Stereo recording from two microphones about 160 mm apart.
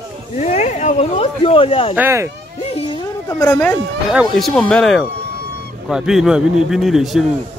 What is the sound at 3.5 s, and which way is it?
Speech, 10° left (ahead or behind).